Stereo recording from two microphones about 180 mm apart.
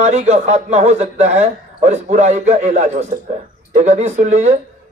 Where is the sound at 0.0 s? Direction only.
40° right (ahead or behind).